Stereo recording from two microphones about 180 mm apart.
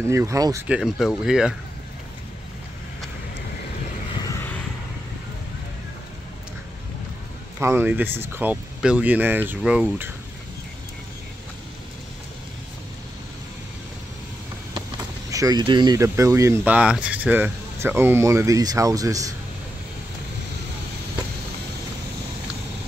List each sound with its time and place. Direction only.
0.1 s speech: 15° right (ahead or behind)
0.7 s speech: centre (ahead or behind)
4.2 s vehicle: 15° left (ahead or behind)
7.5 s speech: 15° right (ahead or behind)
15.3 s speech: 20° right (ahead or behind)